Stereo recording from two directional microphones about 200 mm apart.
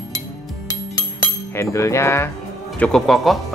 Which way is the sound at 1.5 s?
15° left (ahead or behind).